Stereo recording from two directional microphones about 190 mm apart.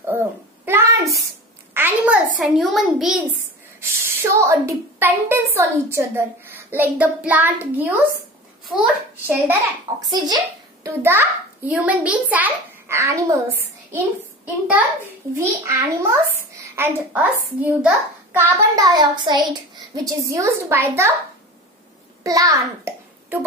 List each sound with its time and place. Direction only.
0.0 s a sound: 10° right (ahead or behind)
1.7 s a child's voice: 10° right (ahead or behind)
3.8 s a woman's voice: 10° right (ahead or behind)
10.0 s a child's voice: 20° right (ahead or behind)
22.2 s a child's voice: 20° right (ahead or behind)